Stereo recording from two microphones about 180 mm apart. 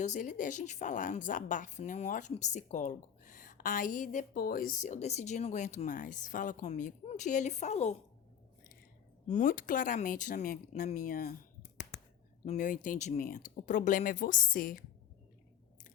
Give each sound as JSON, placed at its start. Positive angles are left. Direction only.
{"t": 0.0, "sound": "a woman's voice", "side_deg": 45}
{"t": 9.2, "sound": "a woman's voice", "side_deg": 45}
{"t": 11.9, "sound": "a sound", "side_deg": 65}
{"t": 12.5, "sound": "a woman's voice", "side_deg": 45}